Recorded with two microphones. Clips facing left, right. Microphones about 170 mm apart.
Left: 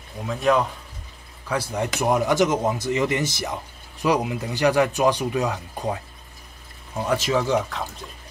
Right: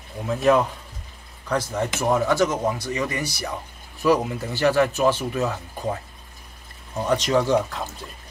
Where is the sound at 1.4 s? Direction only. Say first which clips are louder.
Right 1 dB; 10° left (ahead or behind).